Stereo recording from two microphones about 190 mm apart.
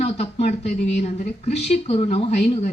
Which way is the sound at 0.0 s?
35° left (ahead or behind).